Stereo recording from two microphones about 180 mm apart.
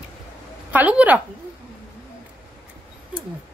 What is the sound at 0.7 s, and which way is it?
Speech, 10° right (ahead or behind).